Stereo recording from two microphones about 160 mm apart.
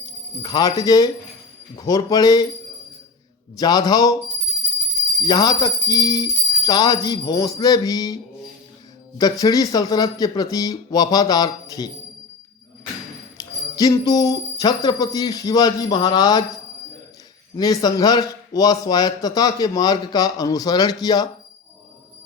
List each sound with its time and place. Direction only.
0.4 s speech: 25° left (ahead or behind)
3.6 s speech: 25° left (ahead or behind)
5.2 s speech: 25° left (ahead or behind)
13.3 s speech: 25° left (ahead or behind)
17.6 s speech: 25° left (ahead or behind)